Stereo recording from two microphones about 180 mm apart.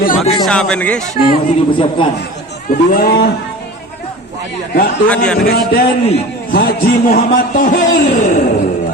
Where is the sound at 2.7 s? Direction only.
55° left (ahead or behind).